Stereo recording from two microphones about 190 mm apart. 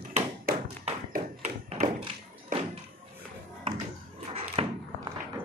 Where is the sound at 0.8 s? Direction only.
35° right (ahead or behind).